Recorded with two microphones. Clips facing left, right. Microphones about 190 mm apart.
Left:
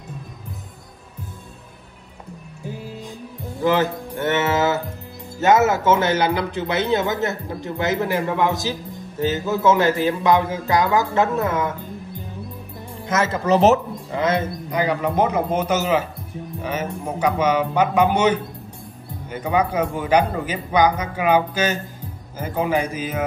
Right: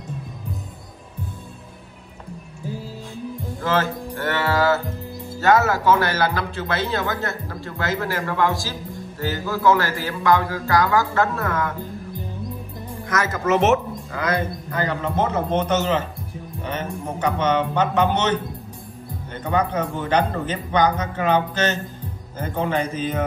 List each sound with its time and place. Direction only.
3.6 s music: 15° left (ahead or behind)
5.4 s speech: 20° left (ahead or behind)
13.1 s speech: 25° left (ahead or behind)
14.1 s speech: 25° left (ahead or behind)
14.8 s a man's voice: 15° left (ahead or behind)